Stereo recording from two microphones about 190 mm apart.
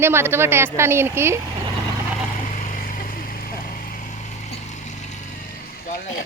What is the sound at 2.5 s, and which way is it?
Vehicle, 40° left (ahead or behind).